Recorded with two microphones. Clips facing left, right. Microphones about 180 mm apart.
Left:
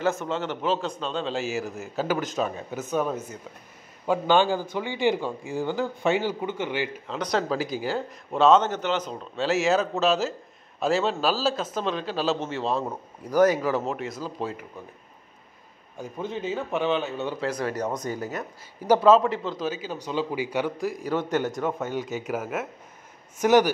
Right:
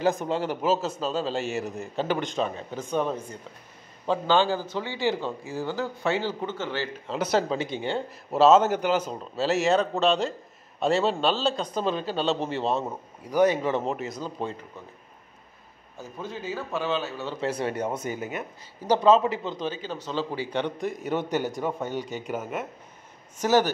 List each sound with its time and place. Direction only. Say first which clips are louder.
0.0 s a man's voice: right 1 dB; 15° right (ahead or behind); by 6.9 s 15° left (ahead or behind)
7.1 s a man's voice: right 4 dB; 5° right (ahead or behind)
7.4 s speech: left 1 dB; 25° right (ahead or behind)
8.3 s a man's voice: right 1 dB; 5° right (ahead or behind)
16.0 s speech: left 4 dB; 20° left (ahead or behind)
17.4 s speech: right 3 dB; 30° right (ahead or behind)
18.9 s a man's voice: left 2 dB; 5° left (ahead or behind)